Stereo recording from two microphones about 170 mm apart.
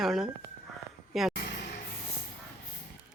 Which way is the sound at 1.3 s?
85° left.